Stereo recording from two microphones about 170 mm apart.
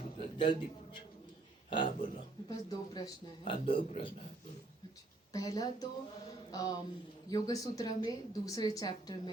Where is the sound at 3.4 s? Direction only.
30° left (ahead or behind).